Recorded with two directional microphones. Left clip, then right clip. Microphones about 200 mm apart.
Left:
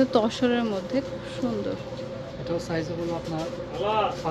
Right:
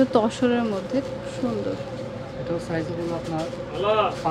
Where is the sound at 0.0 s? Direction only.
5° right (ahead or behind).